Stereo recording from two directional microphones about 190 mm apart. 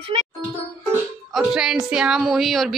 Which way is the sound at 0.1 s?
25° right (ahead or behind).